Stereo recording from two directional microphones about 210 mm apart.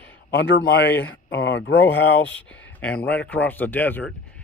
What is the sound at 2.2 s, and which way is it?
Speech, 65° left (ahead or behind).